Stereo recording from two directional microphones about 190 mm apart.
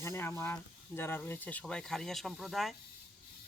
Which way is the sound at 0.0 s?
15° left (ahead or behind).